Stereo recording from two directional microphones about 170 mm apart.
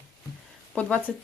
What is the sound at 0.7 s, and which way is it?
Speech, 10° left (ahead or behind).